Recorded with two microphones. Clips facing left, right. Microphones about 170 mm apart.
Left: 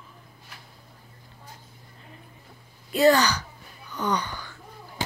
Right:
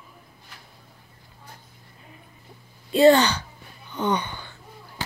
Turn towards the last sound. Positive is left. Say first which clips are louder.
# right 2 dB
turn(degrees=-25)  # may be behind; listen again after turning